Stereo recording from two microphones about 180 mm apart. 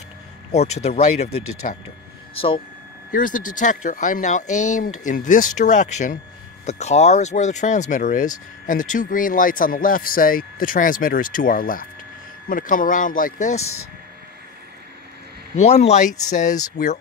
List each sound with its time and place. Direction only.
0.5 s speech: 35° left (ahead or behind)
3.1 s speech: 50° left (ahead or behind)
15.5 s speech: 35° left (ahead or behind)